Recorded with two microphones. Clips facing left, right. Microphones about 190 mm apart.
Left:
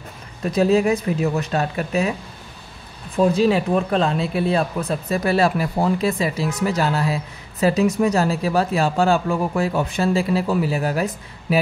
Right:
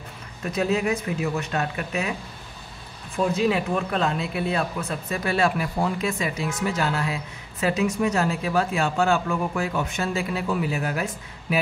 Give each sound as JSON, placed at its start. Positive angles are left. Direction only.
{"t": 0.4, "sound": "speech", "side_deg": 35}
{"t": 3.3, "sound": "speech", "side_deg": 30}